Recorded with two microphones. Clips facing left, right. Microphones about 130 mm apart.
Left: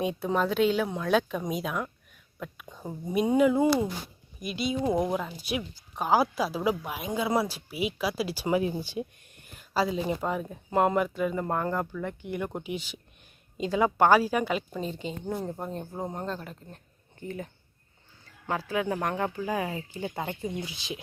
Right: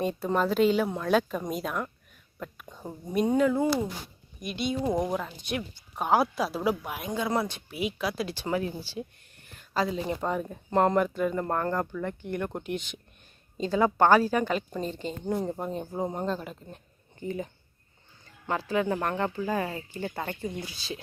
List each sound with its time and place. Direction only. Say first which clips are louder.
0.0 s a woman's voice: even; centre (ahead or behind)
4.4 s a woman's voice: even; centre (ahead or behind)